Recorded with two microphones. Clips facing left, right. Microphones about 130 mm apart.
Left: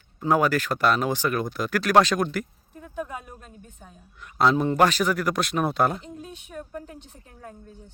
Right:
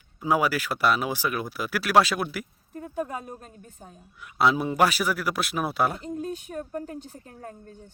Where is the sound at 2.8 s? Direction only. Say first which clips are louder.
Right 2 dB; 40° right (ahead or behind).